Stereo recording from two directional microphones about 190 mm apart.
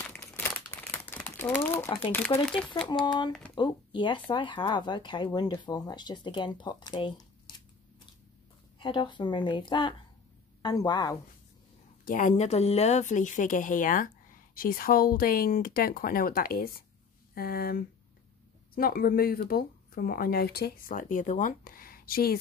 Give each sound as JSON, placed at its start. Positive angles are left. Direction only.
{"t": 0.0, "sound": "crumpling", "side_deg": 10}
{"t": 3.5, "sound": "speech", "side_deg": 25}
{"t": 8.7, "sound": "speech", "side_deg": 25}
{"t": 12.0, "sound": "speech", "side_deg": 45}